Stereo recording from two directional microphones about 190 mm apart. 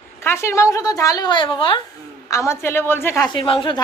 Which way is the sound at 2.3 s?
15° left (ahead or behind).